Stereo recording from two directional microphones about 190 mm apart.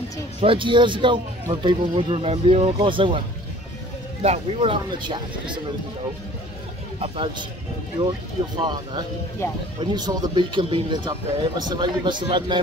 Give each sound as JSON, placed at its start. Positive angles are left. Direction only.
{"t": 0.4, "sound": "speech", "side_deg": -25}
{"t": 4.2, "sound": "speech", "side_deg": -30}
{"t": 7.0, "sound": "speech", "side_deg": -25}
{"t": 8.5, "sound": "speech", "side_deg": -25}
{"t": 9.4, "sound": "speech", "side_deg": 10}
{"t": 9.8, "sound": "speech", "side_deg": -25}